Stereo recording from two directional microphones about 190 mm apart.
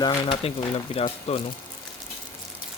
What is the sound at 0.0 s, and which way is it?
Speech, 25° left (ahead or behind).